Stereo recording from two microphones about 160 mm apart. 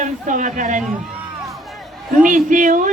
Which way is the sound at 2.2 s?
55° right (ahead or behind).